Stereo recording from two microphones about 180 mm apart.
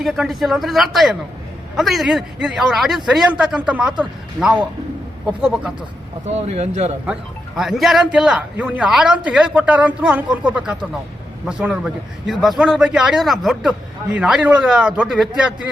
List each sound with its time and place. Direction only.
0.0 s a man's voice: centre (ahead or behind)
6.2 s speech: 35° right (ahead or behind)
7.1 s a man's voice: centre (ahead or behind)